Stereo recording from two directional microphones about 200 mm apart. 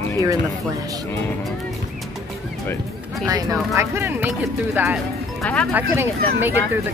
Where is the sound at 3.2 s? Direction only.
20° right (ahead or behind).